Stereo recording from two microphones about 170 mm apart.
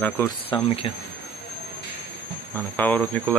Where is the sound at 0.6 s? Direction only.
35° left (ahead or behind).